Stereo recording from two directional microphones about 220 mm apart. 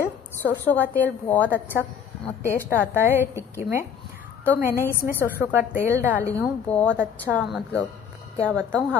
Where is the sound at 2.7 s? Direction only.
10° right (ahead or behind).